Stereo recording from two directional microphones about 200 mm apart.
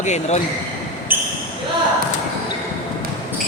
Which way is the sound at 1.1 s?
10° right (ahead or behind).